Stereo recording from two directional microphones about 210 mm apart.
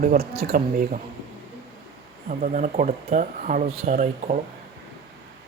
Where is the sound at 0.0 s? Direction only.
45° right (ahead or behind).